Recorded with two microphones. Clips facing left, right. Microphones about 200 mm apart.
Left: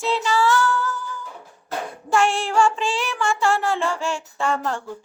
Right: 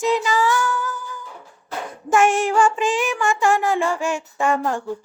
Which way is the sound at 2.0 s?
20° right (ahead or behind).